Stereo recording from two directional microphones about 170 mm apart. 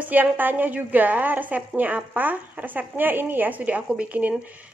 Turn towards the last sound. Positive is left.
turn(degrees=-10)  # may be behind; listen again after turning